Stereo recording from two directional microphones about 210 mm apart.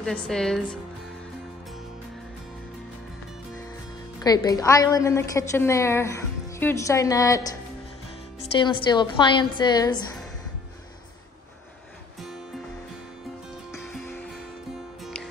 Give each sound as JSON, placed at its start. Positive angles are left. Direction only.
{"t": 0.0, "sound": "a woman's voice", "side_deg": 5}
{"t": 4.2, "sound": "a woman's voice", "side_deg": 15}
{"t": 8.5, "sound": "a woman's voice", "side_deg": 20}
{"t": 13.7, "sound": "music", "side_deg": 10}
{"t": 15.0, "sound": "music", "side_deg": 0}